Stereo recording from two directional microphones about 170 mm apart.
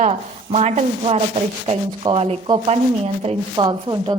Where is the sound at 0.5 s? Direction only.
40° right (ahead or behind).